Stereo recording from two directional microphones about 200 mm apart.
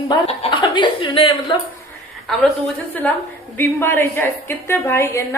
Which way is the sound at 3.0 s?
5° left (ahead or behind).